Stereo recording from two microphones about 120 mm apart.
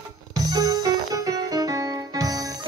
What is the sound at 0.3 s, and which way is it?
Music, 30° right (ahead or behind).